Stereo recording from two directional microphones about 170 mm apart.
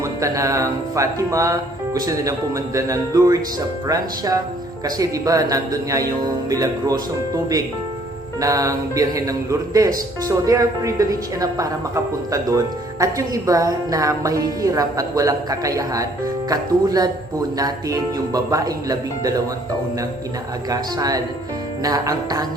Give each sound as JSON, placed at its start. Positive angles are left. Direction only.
{"t": 0.0, "sound": "a woman's voice", "side_deg": -20}
{"t": 8.4, "sound": "a woman's voice", "side_deg": -20}
{"t": 20.7, "sound": "a woman's voice", "side_deg": -20}